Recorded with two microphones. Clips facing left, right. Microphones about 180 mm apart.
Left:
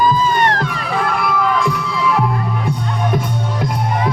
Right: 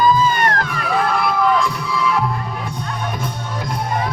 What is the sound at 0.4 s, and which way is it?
Crowd, 30° left (ahead or behind).